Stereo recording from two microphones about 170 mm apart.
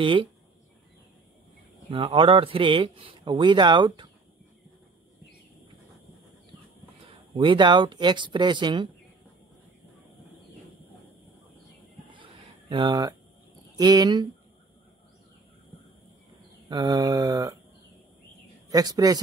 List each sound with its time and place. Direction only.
0.0 s speech: 30° right (ahead or behind)
1.9 s a man's voice: 30° right (ahead or behind)
7.3 s a man's voice: 30° right (ahead or behind)
12.1 s a sound: 30° right (ahead or behind)
13.7 s a man's voice: 25° right (ahead or behind)
16.6 s a man's voice: 25° right (ahead or behind)
18.7 s a man's voice: 20° right (ahead or behind)